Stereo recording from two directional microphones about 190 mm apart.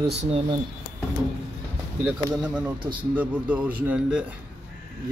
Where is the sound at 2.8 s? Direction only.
25° right (ahead or behind).